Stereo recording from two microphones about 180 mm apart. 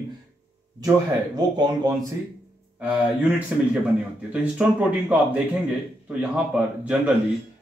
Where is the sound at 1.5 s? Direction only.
25° right (ahead or behind).